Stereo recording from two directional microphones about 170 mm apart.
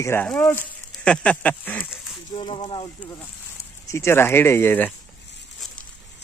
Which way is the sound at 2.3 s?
30° left (ahead or behind).